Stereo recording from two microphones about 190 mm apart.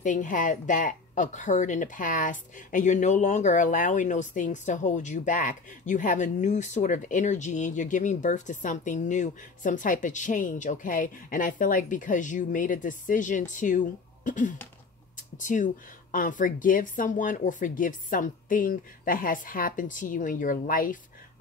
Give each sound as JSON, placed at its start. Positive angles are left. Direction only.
{"t": 0.0, "sound": "a woman's voice", "side_deg": 40}